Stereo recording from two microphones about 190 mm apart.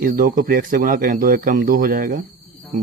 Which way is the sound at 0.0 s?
50° right (ahead or behind).